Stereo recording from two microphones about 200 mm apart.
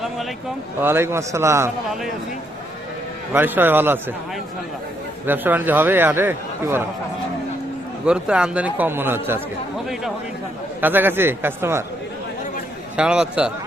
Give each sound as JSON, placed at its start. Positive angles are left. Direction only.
{"t": 0.8, "sound": "a man's voice", "side_deg": -10}
{"t": 3.3, "sound": "a man's voice", "side_deg": -10}
{"t": 5.2, "sound": "a man's voice", "side_deg": -10}
{"t": 8.0, "sound": "a man's voice", "side_deg": -5}
{"t": 10.8, "sound": "a man's voice", "side_deg": -10}
{"t": 13.0, "sound": "a man's voice", "side_deg": -5}